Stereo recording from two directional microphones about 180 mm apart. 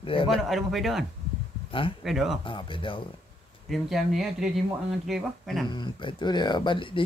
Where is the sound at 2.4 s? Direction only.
30° left (ahead or behind).